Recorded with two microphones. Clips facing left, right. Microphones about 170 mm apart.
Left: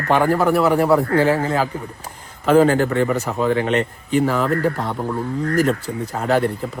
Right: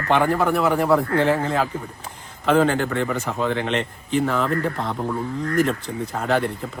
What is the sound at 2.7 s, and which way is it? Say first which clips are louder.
Speech: left 5 dB; 35° left (ahead or behind).